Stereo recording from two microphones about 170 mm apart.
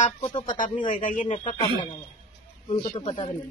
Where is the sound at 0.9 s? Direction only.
45° left (ahead or behind); by 1.9 s 30° left (ahead or behind).